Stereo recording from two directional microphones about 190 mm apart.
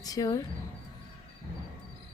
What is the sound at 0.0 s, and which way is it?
Speech, 20° left (ahead or behind).